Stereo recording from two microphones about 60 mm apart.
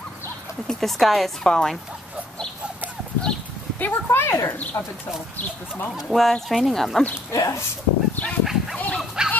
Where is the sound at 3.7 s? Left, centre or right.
Left.